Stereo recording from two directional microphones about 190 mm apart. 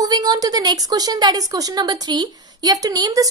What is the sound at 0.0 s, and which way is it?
A woman's voice, 20° right (ahead or behind).